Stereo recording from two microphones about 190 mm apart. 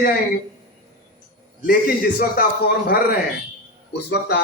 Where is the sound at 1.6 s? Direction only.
50° left (ahead or behind).